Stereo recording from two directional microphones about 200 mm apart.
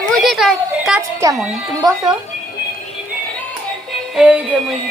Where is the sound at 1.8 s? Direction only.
20° right (ahead or behind).